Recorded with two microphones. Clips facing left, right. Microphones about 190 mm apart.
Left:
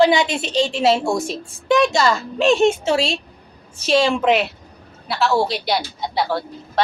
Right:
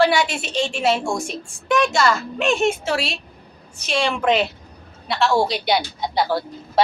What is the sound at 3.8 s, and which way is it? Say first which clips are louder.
Speech: left 6 dB; 40° left (ahead or behind).